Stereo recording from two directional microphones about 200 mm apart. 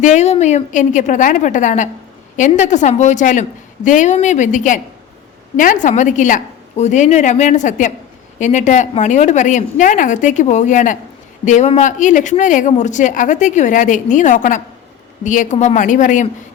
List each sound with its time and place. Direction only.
0.0 s speech: 35° left (ahead or behind)